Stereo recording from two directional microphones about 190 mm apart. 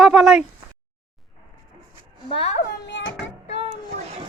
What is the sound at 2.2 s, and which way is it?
Speech, 30° left (ahead or behind).